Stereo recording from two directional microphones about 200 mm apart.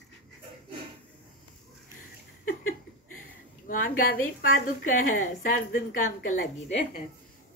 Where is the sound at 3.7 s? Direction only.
45° left (ahead or behind).